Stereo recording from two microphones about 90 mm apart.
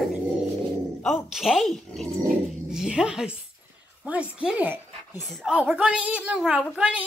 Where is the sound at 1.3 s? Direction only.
5° right (ahead or behind).